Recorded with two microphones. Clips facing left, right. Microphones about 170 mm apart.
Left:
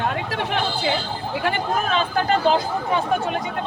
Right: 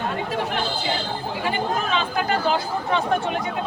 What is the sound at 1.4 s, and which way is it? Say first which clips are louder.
Speech: left 1 dB; 55° left (ahead or behind).